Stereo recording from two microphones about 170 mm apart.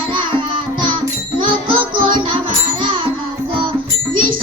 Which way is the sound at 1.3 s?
30° right (ahead or behind).